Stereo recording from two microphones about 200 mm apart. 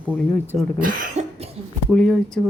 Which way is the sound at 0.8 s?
45° right (ahead or behind).